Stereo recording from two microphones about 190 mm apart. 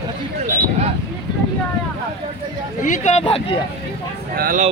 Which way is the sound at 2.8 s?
40° left (ahead or behind).